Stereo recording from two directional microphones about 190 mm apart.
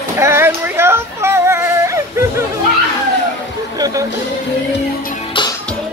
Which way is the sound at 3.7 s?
20° right (ahead or behind).